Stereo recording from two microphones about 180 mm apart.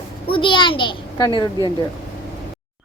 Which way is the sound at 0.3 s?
30° left (ahead or behind).